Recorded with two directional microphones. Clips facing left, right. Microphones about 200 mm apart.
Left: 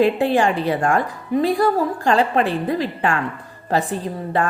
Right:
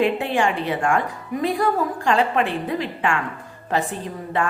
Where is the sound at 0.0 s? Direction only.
35° left (ahead or behind).